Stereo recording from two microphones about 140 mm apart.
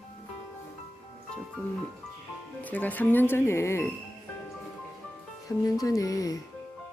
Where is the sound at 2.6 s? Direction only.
10° left (ahead or behind).